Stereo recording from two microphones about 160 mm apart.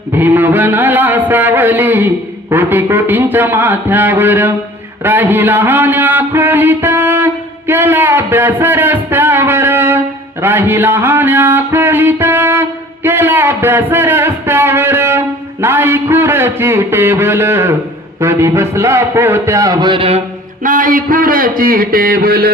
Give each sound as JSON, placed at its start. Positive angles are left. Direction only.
{"t": 0.1, "sound": "a man's voice", "side_deg": -10}
{"t": 10.4, "sound": "music", "side_deg": -15}
{"t": 15.6, "sound": "a man's voice", "side_deg": -15}
{"t": 20.7, "sound": "a man's voice", "side_deg": -60}